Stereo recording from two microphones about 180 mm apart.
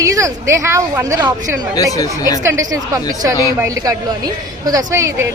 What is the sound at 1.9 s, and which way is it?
Speech, 20° left (ahead or behind).